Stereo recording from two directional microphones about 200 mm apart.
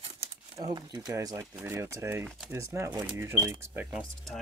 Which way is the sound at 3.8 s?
5° right (ahead or behind).